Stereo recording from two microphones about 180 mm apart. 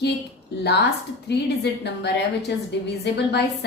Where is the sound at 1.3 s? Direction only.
70° left (ahead or behind).